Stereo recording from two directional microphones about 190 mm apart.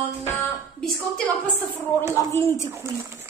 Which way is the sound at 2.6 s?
15° right (ahead or behind).